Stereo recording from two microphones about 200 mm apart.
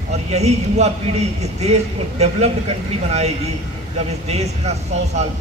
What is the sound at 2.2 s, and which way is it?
Speech, 30° right (ahead or behind).